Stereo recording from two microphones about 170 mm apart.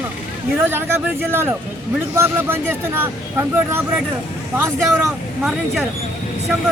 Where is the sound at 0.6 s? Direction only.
15° right (ahead or behind).